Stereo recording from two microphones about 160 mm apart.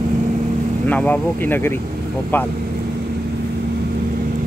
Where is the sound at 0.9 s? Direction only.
10° left (ahead or behind).